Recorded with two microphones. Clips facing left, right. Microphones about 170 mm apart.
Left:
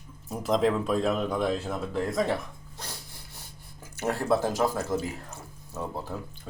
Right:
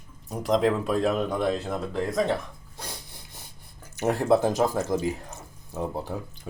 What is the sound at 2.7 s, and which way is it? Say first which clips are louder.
Rub: right 3 dB; 15° right (ahead or behind).